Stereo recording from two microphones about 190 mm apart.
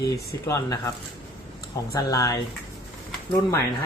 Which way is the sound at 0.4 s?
15° left (ahead or behind).